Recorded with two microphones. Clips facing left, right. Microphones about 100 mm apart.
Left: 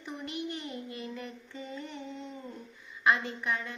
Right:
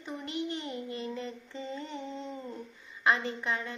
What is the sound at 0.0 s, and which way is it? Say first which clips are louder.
Child singing: right 2 dB; 25° right (ahead or behind).